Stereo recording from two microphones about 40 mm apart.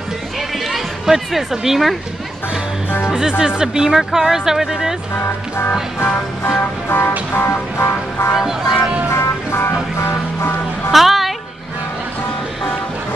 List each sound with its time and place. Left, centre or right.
0.7 s speech: centre
3.2 s speech: centre
6.9 s vehicle: left
7.7 s vehicle: left
8.4 s speech: centre
9.1 s music: left
10.9 s music: centre